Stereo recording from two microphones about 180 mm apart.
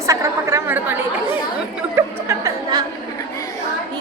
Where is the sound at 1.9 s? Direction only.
15° right (ahead or behind).